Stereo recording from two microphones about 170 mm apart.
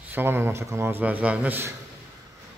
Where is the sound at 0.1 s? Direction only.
10° right (ahead or behind).